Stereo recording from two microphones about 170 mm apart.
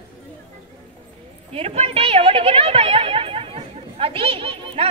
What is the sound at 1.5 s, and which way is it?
A woman's voice, 35° right (ahead or behind).